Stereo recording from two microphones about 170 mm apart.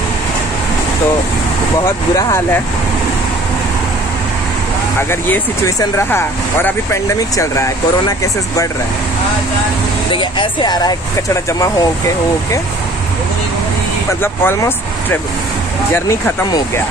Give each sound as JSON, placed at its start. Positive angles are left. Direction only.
{"t": 5.1, "sound": "speech", "side_deg": 15}
{"t": 10.1, "sound": "speech", "side_deg": 30}
{"t": 14.2, "sound": "speech", "side_deg": 15}